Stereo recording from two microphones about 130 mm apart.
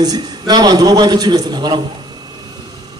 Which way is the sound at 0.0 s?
30° right (ahead or behind).